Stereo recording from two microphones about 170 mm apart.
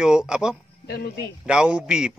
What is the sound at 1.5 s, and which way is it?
Speech, 5° right (ahead or behind).